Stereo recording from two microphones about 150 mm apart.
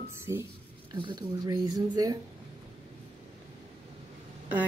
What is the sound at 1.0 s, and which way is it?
Speech, 30° right (ahead or behind).